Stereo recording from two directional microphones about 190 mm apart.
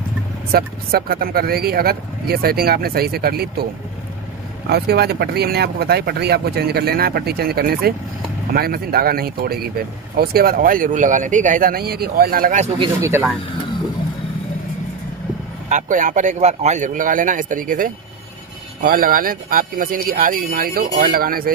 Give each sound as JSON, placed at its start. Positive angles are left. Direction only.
{"t": 0.5, "sound": "speech", "side_deg": -55}
{"t": 4.6, "sound": "speech", "side_deg": -55}
{"t": 15.7, "sound": "speech", "side_deg": -40}